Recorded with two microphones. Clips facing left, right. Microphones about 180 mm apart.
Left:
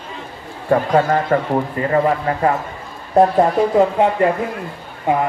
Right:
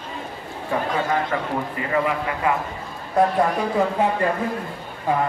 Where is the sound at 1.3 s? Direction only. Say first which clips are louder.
Left 7 dB; 50° left (ahead or behind).